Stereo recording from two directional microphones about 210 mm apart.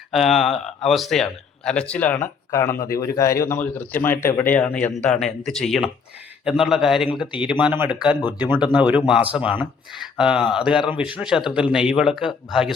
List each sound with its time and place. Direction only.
0.1 s a man's voice: centre (ahead or behind)